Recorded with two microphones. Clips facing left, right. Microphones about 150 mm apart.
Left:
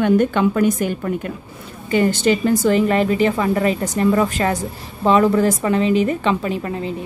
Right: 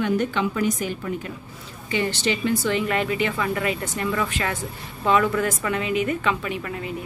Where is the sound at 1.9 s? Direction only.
45° left (ahead or behind); by 6.9 s 30° left (ahead or behind).